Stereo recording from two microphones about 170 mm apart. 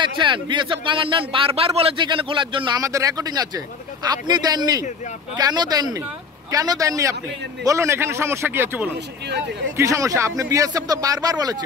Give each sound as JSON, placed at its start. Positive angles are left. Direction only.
{"t": 0.0, "sound": "a man's voice", "side_deg": -30}